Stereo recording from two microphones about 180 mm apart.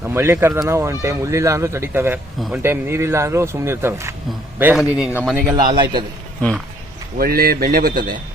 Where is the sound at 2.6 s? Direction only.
15° right (ahead or behind).